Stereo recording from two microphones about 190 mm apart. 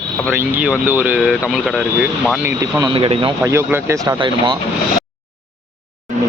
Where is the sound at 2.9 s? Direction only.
25° right (ahead or behind).